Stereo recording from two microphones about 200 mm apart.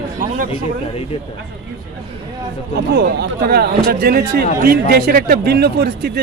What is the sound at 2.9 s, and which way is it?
Speech, 60° right (ahead or behind).